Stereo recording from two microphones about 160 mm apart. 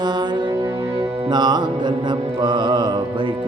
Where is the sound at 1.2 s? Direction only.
25° right (ahead or behind).